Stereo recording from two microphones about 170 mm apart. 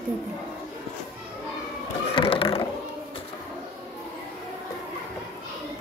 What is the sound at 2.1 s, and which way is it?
Mechanisms, 30° left (ahead or behind).